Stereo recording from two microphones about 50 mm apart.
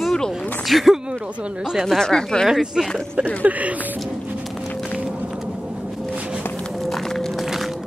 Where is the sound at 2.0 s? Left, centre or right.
Centre.